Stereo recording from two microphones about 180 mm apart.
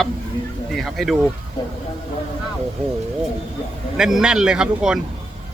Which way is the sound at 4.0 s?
5° right (ahead or behind).